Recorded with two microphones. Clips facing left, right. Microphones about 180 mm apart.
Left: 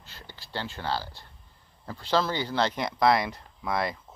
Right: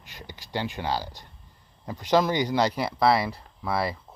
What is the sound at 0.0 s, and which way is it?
Speech, 15° right (ahead or behind).